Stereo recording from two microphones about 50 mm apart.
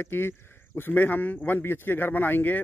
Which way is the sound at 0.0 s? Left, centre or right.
Left.